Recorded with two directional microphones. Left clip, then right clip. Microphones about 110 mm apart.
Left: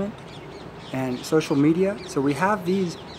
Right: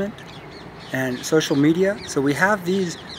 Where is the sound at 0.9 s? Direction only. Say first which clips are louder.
Right 3 dB; centre (ahead or behind).